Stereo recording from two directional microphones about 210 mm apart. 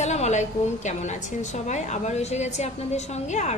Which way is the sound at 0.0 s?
35° left (ahead or behind).